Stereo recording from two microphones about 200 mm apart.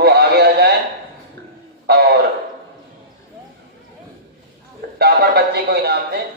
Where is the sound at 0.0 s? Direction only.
55° right (ahead or behind).